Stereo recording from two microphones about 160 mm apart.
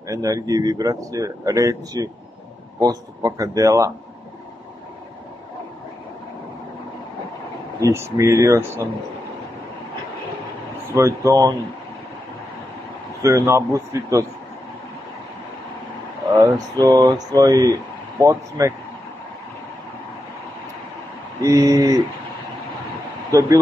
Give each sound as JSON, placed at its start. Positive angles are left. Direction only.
{"t": 0.1, "sound": "speech", "side_deg": -20}
{"t": 7.8, "sound": "speech", "side_deg": -20}
{"t": 11.0, "sound": "speech", "side_deg": -20}
{"t": 13.2, "sound": "speech", "side_deg": -20}
{"t": 16.3, "sound": "a sound", "side_deg": -15}
{"t": 16.8, "sound": "speech", "side_deg": -25}
{"t": 21.4, "sound": "speech", "side_deg": -20}
{"t": 23.3, "sound": "speech", "side_deg": -20}